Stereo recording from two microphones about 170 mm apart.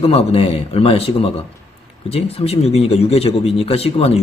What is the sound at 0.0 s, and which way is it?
Speech, 35° left (ahead or behind).